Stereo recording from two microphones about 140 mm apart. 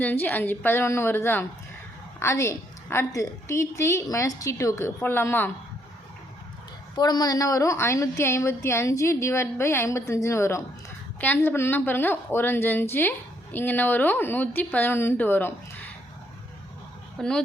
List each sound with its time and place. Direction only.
0.0 s a woman's voice: 15° left (ahead or behind)
6.9 s a woman's voice: 30° left (ahead or behind)
17.2 s speech: 5° left (ahead or behind)